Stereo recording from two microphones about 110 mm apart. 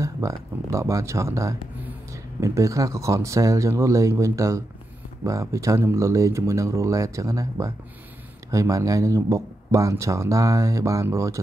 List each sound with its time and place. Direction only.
0.0 s speech: 25° right (ahead or behind)